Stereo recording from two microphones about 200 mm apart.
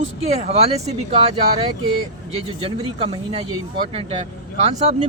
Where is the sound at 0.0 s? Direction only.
30° right (ahead or behind).